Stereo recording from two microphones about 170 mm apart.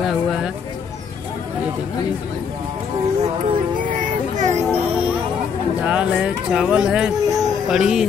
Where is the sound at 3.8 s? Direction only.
50° right (ahead or behind).